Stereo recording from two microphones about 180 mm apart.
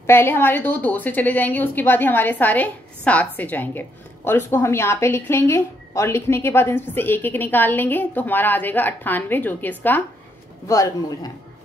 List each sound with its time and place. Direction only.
0.0 s a woman's voice: 15° left (ahead or behind)